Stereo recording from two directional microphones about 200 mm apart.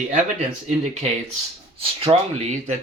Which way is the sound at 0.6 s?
35° right (ahead or behind).